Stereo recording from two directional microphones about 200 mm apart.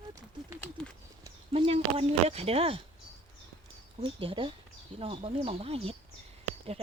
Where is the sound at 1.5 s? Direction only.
30° right (ahead or behind).